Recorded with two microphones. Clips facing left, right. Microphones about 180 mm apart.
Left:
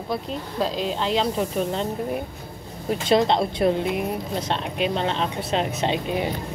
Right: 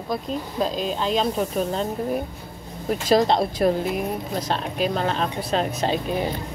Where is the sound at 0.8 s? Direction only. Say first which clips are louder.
Left 1 dB; 25° left (ahead or behind).